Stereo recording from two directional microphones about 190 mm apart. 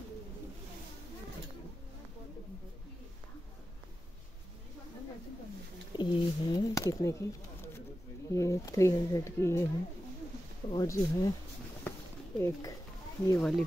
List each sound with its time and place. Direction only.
5.9 s a sound: 25° left (ahead or behind)
8.3 s speech: 15° left (ahead or behind)
10.7 s speech: 20° left (ahead or behind)
11.9 s a sound: 10° left (ahead or behind)
12.4 s speech: 15° left (ahead or behind)
13.4 s speech: centre (ahead or behind)